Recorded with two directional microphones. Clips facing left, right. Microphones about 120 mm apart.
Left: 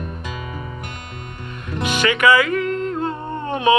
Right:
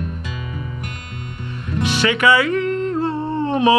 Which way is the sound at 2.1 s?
25° right (ahead or behind).